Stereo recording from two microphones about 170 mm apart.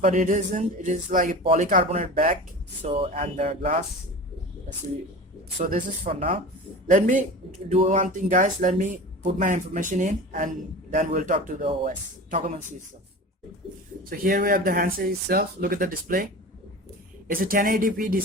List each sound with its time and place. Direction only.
0.0 s speech: 45° right (ahead or behind)
2.8 s speech: 30° right (ahead or behind)
3.2 s speech: 45° right (ahead or behind)
5.5 s speech: 50° right (ahead or behind)
7.7 s speech: 35° right (ahead or behind)
7.9 s speech: 50° right (ahead or behind)
14.0 s speech: 55° right (ahead or behind)
17.2 s speech: 55° right (ahead or behind)